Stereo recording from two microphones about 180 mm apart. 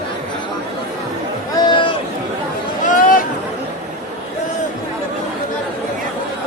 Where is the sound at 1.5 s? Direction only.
25° left (ahead or behind).